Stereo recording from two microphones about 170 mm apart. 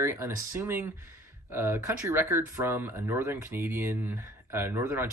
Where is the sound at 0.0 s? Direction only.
15° right (ahead or behind).